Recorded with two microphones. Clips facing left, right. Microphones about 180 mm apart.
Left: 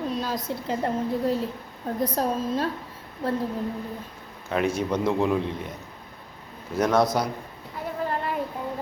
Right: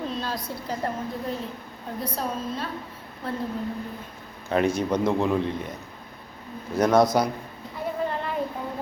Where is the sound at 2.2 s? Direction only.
40° left (ahead or behind).